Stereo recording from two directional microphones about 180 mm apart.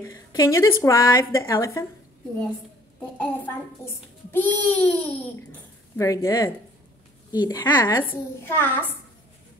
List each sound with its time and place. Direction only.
0.0 s a child's voice: 15° left (ahead or behind)
3.0 s a child's voice: 10° left (ahead or behind)